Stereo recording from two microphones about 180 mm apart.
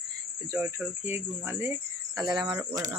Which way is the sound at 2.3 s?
25° right (ahead or behind).